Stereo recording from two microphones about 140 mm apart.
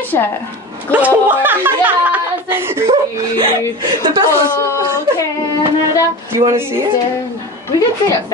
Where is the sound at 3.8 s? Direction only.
35° right (ahead or behind).